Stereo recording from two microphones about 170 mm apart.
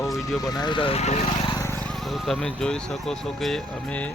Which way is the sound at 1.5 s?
15° left (ahead or behind).